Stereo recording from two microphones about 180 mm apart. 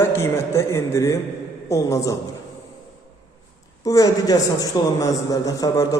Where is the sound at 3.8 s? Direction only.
20° left (ahead or behind).